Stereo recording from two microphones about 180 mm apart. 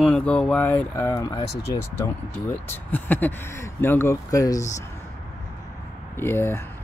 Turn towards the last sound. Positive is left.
turn(degrees=15)  # may be behind; listen again after turning